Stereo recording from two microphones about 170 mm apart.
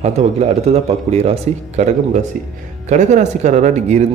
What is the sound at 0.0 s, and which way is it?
Speech, 40° right (ahead or behind).